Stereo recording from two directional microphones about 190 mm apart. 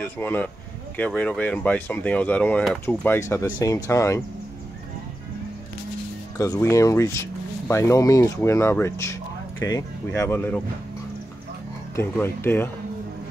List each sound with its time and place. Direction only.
0.0 s speech: 10° left (ahead or behind)
6.3 s speech: 15° left (ahead or behind)
11.9 s speech: 15° left (ahead or behind)